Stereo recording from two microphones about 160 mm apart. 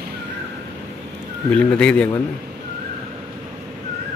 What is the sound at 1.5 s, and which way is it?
Speech, 5° left (ahead or behind).